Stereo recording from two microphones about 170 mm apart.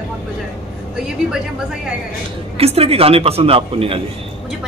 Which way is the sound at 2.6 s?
35° right (ahead or behind).